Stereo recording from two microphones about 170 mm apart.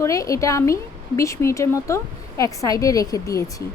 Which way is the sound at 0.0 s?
20° left (ahead or behind).